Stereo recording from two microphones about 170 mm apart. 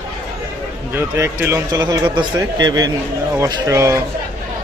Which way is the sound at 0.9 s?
15° right (ahead or behind).